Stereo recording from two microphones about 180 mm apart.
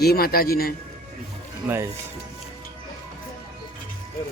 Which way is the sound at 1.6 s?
15° right (ahead or behind).